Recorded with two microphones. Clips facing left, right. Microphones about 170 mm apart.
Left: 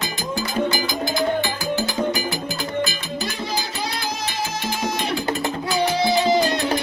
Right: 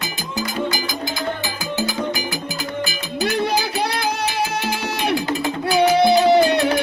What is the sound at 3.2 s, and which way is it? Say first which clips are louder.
Music: right 9 dB; 65° right (ahead or behind).